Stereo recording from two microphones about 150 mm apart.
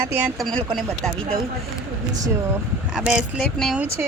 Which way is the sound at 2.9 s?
5° right (ahead or behind).